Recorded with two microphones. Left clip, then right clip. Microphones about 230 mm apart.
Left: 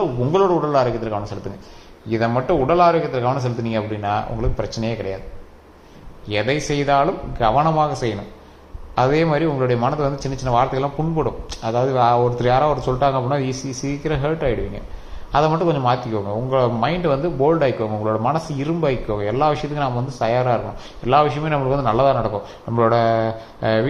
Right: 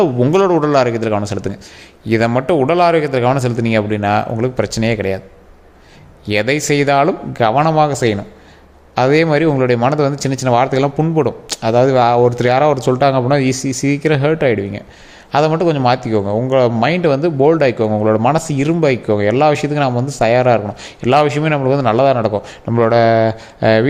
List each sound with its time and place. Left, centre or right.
0.0 s a man's voice: right
6.2 s a man's voice: right